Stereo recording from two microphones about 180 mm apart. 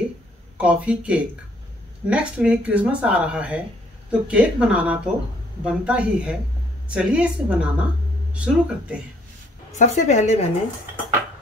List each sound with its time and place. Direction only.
0.6 s speech: 5° right (ahead or behind)
9.8 s a woman's voice: 40° left (ahead or behind)